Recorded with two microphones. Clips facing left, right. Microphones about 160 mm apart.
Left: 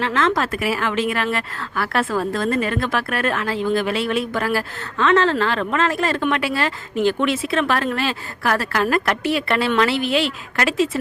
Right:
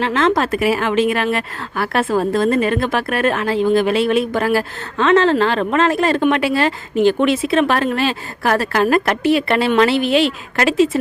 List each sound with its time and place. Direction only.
0.0 s speech: 20° right (ahead or behind)